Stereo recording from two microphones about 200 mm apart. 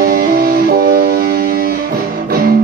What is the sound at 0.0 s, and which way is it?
Music, 50° right (ahead or behind).